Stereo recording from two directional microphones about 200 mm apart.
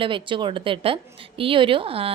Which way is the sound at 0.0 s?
25° right (ahead or behind).